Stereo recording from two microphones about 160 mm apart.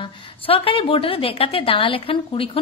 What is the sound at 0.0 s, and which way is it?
A woman's voice, 35° left (ahead or behind).